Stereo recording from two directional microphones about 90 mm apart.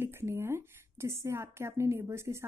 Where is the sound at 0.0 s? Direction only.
25° right (ahead or behind).